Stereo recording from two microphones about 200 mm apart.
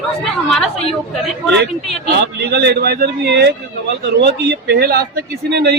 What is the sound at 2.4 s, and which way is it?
A man's voice, 55° right (ahead or behind).